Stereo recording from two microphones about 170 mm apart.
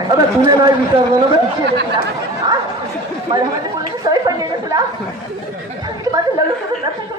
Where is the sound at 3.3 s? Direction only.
25° right (ahead or behind).